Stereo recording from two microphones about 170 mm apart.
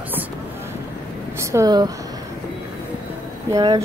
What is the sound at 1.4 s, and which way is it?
Speech, 15° right (ahead or behind).